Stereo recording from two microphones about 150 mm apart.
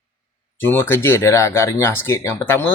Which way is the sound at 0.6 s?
15° left (ahead or behind).